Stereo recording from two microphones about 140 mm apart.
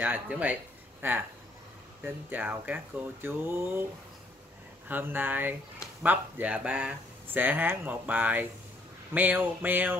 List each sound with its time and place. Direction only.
0.0 s speech: 10° right (ahead or behind)
4.8 s speech: 15° right (ahead or behind)